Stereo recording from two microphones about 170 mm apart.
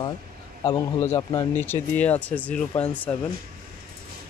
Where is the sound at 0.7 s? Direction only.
25° left (ahead or behind).